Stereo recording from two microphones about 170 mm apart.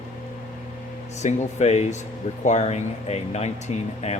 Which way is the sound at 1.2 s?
40° left (ahead or behind).